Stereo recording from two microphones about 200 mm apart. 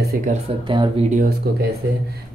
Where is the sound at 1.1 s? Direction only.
45° right (ahead or behind).